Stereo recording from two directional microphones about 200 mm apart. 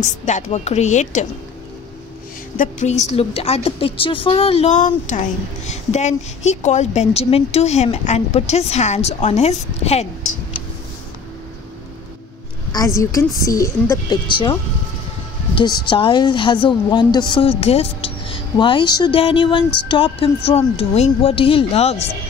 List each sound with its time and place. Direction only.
0.0 s speech: 35° left (ahead or behind)
2.5 s speech: 40° left (ahead or behind)
12.7 s a woman's voice: 15° left (ahead or behind)
15.9 s a woman's voice: 25° left (ahead or behind)